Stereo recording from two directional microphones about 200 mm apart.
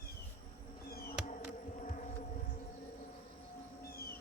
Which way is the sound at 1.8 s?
35° left (ahead or behind).